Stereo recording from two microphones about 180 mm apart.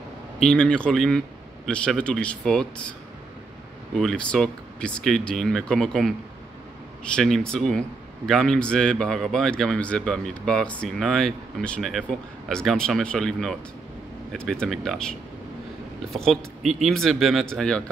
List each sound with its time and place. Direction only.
0.4 s speech: 5° left (ahead or behind)
3.9 s speech: centre (ahead or behind)
7.2 s speech: 5° left (ahead or behind)